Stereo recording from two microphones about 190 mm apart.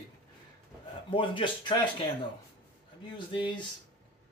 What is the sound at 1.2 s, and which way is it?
Speech, 25° left (ahead or behind).